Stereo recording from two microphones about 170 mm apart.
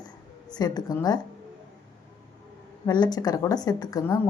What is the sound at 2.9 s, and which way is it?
A woman's voice, 25° left (ahead or behind).